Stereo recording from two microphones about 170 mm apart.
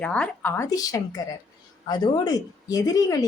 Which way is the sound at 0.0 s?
5° left (ahead or behind).